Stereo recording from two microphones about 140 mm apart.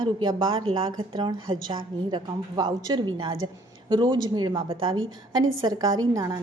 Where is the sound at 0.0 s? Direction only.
35° right (ahead or behind).